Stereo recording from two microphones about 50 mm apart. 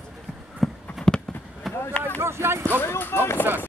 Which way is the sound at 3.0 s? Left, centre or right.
Left.